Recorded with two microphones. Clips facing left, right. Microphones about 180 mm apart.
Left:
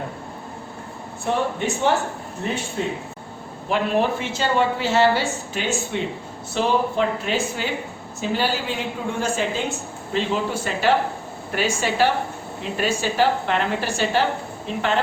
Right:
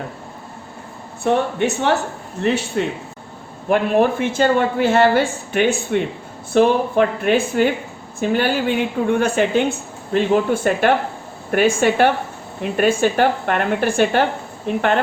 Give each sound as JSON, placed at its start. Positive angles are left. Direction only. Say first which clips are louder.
{"t": 1.2, "sound": "speech", "louder": "right 5 dB", "side_deg": -65}
{"t": 3.7, "sound": "a woman's voice", "louder": "right 5 dB", "side_deg": -55}